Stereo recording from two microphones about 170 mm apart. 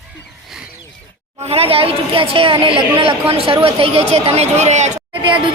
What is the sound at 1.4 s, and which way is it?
Speech, 35° right (ahead or behind).